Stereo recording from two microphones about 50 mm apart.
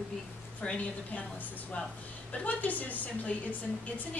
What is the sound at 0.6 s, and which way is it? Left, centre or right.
Speech, left.